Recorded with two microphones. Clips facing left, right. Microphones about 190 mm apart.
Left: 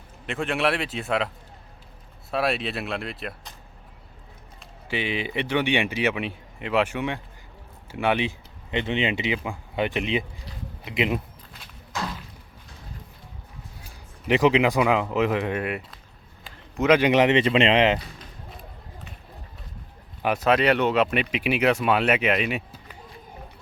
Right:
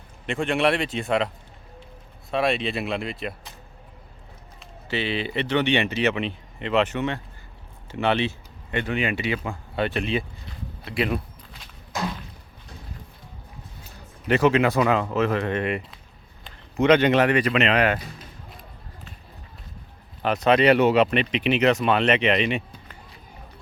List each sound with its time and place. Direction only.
0.3 s speech: centre (ahead or behind)
2.3 s speech: 5° left (ahead or behind)
4.9 s speech: 15° left (ahead or behind)
13.8 s speech: 15° left (ahead or behind)
20.2 s speech: 5° left (ahead or behind)